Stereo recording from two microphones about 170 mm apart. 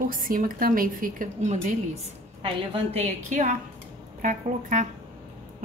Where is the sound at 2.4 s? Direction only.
35° right (ahead or behind).